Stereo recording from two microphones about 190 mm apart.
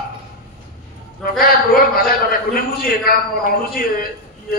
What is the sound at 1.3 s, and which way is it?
A man's voice, 50° left (ahead or behind).